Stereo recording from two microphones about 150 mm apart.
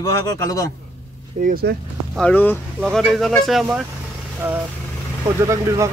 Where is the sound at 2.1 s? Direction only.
10° left (ahead or behind).